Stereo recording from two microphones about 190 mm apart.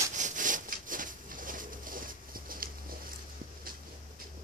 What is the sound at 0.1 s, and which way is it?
Sawing, 40° right (ahead or behind).